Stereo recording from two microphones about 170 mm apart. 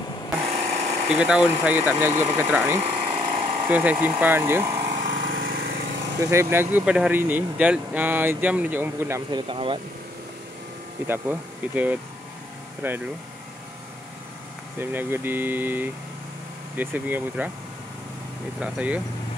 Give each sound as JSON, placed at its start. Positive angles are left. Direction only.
{"t": 0.7, "sound": "a sound", "side_deg": -40}
{"t": 1.0, "sound": "speech", "side_deg": -5}
{"t": 2.8, "sound": "a sound", "side_deg": -35}
{"t": 3.6, "sound": "speech", "side_deg": -10}
{"t": 4.8, "sound": "lawn mower", "side_deg": -50}
{"t": 5.3, "sound": "lawn mower", "side_deg": -60}
{"t": 6.1, "sound": "speech", "side_deg": -15}
{"t": 9.3, "sound": "speech", "side_deg": -30}
{"t": 11.1, "sound": "speech", "side_deg": -10}
{"t": 14.8, "sound": "speech", "side_deg": -10}
{"t": 18.6, "sound": "speech", "side_deg": -10}